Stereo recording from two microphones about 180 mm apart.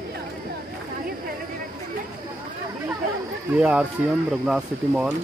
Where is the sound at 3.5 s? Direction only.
10° right (ahead or behind).